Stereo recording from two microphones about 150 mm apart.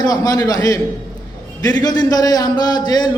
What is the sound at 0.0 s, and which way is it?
A man's voice, 25° left (ahead or behind).